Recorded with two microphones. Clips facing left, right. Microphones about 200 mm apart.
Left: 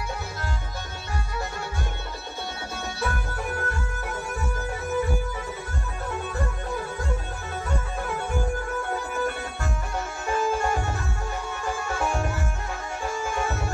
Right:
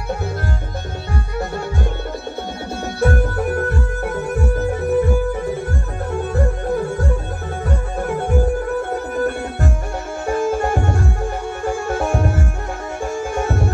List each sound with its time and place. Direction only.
3.0 s music: 50° right (ahead or behind)